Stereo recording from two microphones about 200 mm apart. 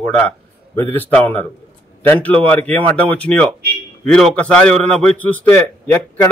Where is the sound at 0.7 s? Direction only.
10° left (ahead or behind).